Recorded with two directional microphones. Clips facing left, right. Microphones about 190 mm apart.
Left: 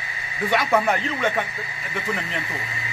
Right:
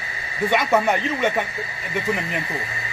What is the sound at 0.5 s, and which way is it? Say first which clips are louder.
Speech: right 1 dB; 5° right (ahead or behind).